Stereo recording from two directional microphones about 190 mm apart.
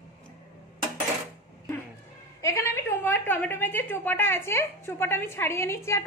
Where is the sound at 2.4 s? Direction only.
15° left (ahead or behind).